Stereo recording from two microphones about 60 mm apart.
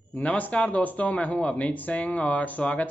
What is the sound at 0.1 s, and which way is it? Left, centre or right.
Speech, left.